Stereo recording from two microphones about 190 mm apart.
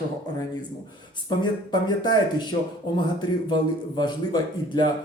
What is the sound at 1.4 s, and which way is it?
Speech, 25° left (ahead or behind).